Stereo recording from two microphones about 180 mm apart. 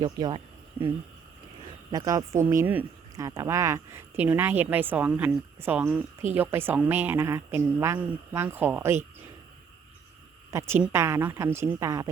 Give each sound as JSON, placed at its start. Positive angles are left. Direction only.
{"t": 0.0, "sound": "speech", "side_deg": -25}
{"t": 1.9, "sound": "a woman's voice", "side_deg": -20}
{"t": 10.5, "sound": "a woman's voice", "side_deg": -15}